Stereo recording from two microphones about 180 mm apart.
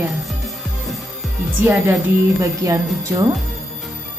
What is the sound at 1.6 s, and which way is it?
Speech, 10° right (ahead or behind).